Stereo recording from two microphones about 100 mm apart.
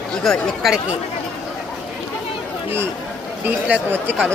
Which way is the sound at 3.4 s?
15° right (ahead or behind).